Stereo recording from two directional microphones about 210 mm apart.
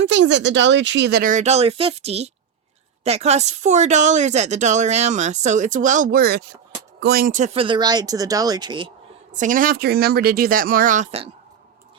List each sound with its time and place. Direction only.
0.0 s speech: 60° right (ahead or behind); by 8.9 s 20° right (ahead or behind)
9.3 s speech: 35° right (ahead or behind)